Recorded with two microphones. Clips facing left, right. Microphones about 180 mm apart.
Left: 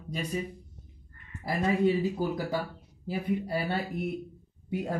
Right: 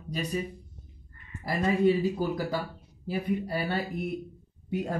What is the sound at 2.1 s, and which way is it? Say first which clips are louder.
Speech: right 1 dB; 20° left (ahead or behind).